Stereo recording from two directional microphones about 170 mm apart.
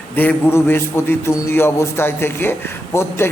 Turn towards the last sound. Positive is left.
turn(degrees=15)  # may be behind; listen again after turning